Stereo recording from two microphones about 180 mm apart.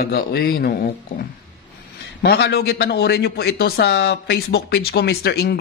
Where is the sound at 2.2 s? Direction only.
65° left (ahead or behind).